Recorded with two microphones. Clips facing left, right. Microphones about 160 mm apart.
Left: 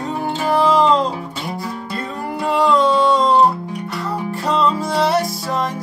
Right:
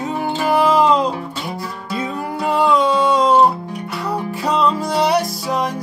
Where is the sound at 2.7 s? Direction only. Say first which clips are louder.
Left 1 dB; 20° right (ahead or behind).